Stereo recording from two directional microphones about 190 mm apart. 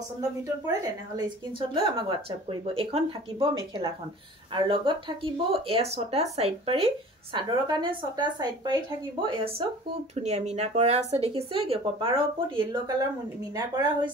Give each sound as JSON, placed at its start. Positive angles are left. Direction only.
{"t": 1.7, "sound": "speech", "side_deg": -25}
{"t": 4.6, "sound": "speech", "side_deg": -25}